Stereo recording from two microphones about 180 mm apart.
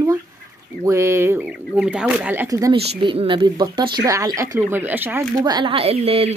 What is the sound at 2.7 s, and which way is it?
Speech, 30° right (ahead or behind).